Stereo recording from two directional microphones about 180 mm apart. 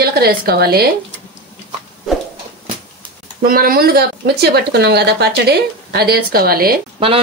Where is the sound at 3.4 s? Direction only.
55° right (ahead or behind).